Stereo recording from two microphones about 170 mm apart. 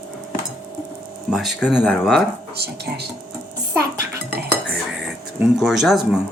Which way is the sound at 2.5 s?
70° right (ahead or behind).